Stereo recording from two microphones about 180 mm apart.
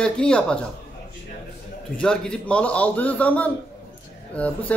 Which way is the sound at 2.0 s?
5° left (ahead or behind).